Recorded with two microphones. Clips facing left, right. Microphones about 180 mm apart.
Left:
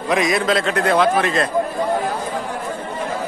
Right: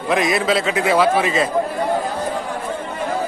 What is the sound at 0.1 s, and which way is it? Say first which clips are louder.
A man's voice: even; centre (ahead or behind).